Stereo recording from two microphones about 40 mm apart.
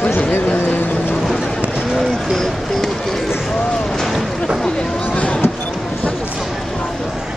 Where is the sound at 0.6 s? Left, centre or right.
Left.